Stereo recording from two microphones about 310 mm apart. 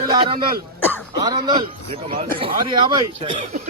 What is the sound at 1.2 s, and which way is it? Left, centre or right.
Speech, centre.